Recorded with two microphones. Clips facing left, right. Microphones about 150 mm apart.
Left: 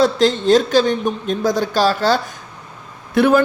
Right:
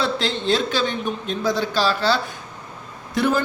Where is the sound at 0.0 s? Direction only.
45° left (ahead or behind).